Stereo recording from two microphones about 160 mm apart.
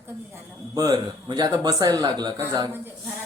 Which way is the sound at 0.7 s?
25° right (ahead or behind).